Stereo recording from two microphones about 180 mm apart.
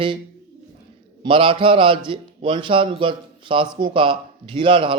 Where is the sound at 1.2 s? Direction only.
30° right (ahead or behind).